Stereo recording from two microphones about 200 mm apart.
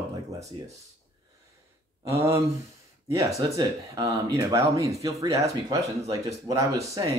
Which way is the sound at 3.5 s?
15° right (ahead or behind).